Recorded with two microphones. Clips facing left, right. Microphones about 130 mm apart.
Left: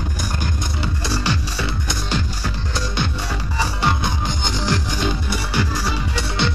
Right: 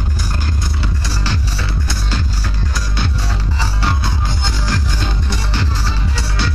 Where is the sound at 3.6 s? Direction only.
20° left (ahead or behind).